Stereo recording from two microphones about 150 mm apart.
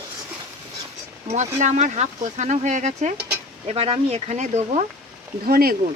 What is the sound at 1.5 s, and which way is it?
Speech, 50° right (ahead or behind).